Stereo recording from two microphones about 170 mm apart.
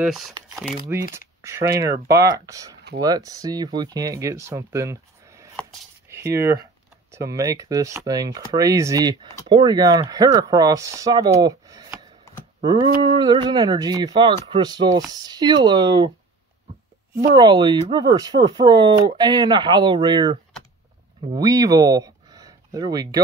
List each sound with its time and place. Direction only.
0.0 s speech: centre (ahead or behind)
0.9 s speech: 15° right (ahead or behind)
17.2 s speech: 25° right (ahead or behind)
21.4 s speech: 20° right (ahead or behind)